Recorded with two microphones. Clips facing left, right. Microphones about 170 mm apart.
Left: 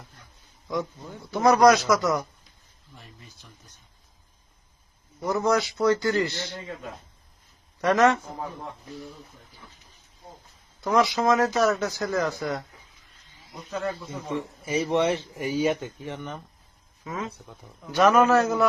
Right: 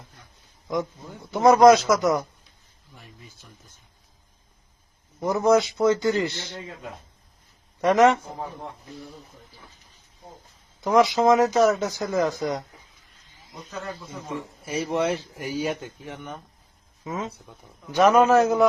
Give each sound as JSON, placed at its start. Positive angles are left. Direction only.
{"t": 0.7, "sound": "a man's voice", "side_deg": -15}
{"t": 5.2, "sound": "speech", "side_deg": -20}
{"t": 7.8, "sound": "a man's voice", "side_deg": -20}
{"t": 10.8, "sound": "speech", "side_deg": -20}
{"t": 13.7, "sound": "a man's voice", "side_deg": 0}
{"t": 17.0, "sound": "speech", "side_deg": -20}
{"t": 17.3, "sound": "a man's voice", "side_deg": 0}
{"t": 17.9, "sound": "a man's voice", "side_deg": -20}